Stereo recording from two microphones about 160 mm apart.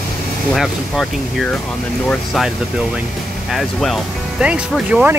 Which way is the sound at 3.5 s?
Centre (ahead or behind).